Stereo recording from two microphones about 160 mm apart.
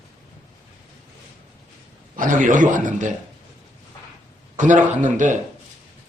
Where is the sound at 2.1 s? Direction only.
55° right (ahead or behind).